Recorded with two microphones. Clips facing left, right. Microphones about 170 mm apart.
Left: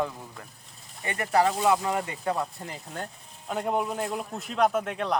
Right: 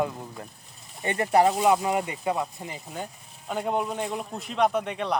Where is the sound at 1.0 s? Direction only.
25° right (ahead or behind).